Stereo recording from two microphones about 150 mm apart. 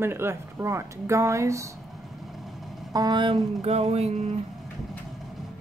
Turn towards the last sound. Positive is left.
turn(degrees=-45)  # may be behind; listen again after turning